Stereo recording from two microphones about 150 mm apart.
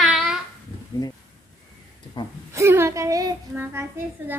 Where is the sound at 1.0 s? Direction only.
25° left (ahead or behind).